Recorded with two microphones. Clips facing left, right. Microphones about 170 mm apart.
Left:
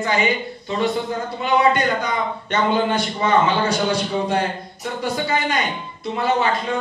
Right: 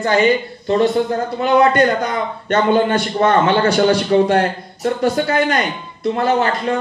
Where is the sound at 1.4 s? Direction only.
50° right (ahead or behind); by 4.4 s 70° right (ahead or behind).